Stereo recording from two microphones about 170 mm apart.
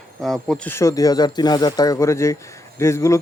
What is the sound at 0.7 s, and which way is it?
A man's voice, 20° left (ahead or behind).